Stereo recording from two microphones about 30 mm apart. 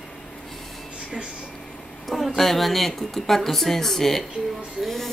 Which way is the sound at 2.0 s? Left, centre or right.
Centre.